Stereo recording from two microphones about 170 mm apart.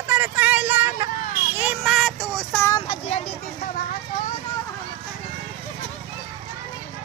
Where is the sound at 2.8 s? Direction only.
35° left (ahead or behind).